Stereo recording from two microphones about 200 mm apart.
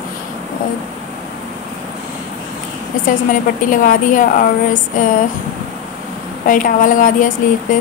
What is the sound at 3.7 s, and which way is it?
Speech, 40° left (ahead or behind).